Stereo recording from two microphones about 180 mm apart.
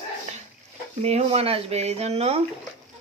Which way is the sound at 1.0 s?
35° right (ahead or behind).